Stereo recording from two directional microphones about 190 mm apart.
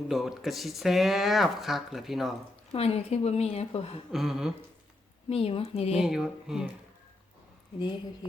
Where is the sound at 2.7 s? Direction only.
30° left (ahead or behind).